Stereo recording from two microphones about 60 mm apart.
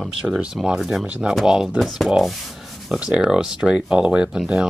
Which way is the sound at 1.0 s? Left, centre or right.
Right.